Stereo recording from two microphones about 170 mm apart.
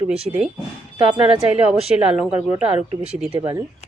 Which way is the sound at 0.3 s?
35° right (ahead or behind).